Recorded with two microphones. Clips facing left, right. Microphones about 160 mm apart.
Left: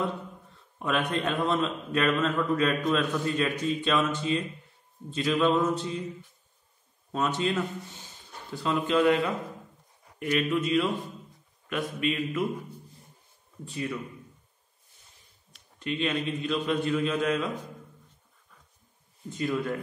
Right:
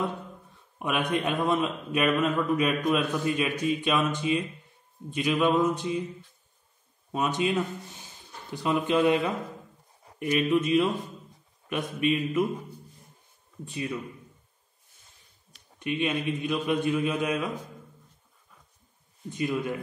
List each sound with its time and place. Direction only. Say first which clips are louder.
0.7 s a man's voice: right 1 dB; 15° right (ahead or behind)
7.1 s a man's voice: right 1 dB; 15° right (ahead or behind)
8.6 s a man's voice: even; 20° right (ahead or behind)
13.7 s speech: even; 20° right (ahead or behind)
15.8 s a man's voice: right 1 dB; 15° right (ahead or behind)
19.3 s a man's voice: even; 15° right (ahead or behind)